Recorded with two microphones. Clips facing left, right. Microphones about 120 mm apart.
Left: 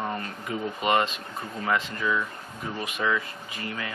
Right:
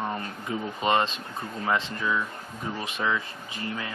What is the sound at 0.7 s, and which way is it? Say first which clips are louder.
Speech: even; 30° right (ahead or behind).